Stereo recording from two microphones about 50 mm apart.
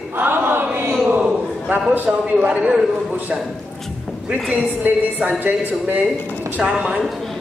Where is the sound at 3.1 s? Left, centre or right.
Right.